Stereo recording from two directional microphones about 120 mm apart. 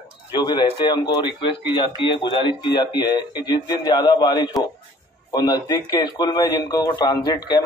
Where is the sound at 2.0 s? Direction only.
45° left (ahead or behind).